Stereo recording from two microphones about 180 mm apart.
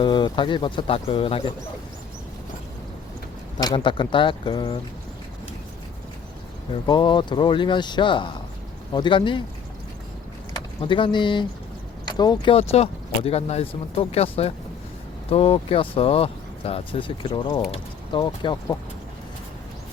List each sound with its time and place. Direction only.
0.0 s speech: 25° left (ahead or behind)
3.6 s speech: 25° left (ahead or behind)
6.8 s speech: 25° left (ahead or behind)
10.5 s speech: 25° left (ahead or behind)
12.5 s speech: 35° left (ahead or behind)